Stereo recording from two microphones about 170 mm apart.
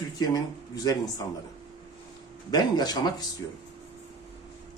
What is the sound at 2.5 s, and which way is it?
Speech, 25° left (ahead or behind).